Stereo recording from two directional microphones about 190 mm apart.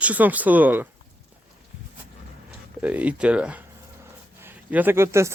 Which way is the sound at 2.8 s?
5° right (ahead or behind).